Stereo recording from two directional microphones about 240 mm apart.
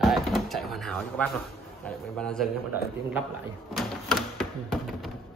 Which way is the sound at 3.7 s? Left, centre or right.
Centre.